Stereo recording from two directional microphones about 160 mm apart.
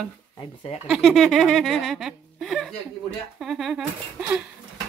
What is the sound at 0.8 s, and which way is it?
Speech, centre (ahead or behind).